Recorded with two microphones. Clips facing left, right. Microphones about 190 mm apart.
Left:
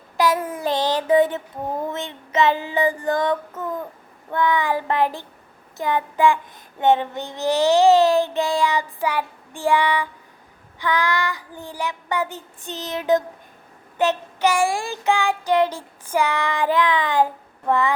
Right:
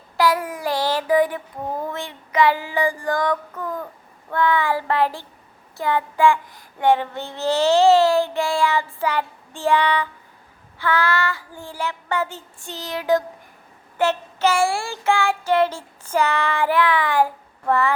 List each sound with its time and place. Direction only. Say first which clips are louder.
0.2 s child singing: even; 20° left (ahead or behind)